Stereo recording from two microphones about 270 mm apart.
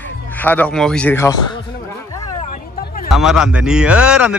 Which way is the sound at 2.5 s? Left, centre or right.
Left.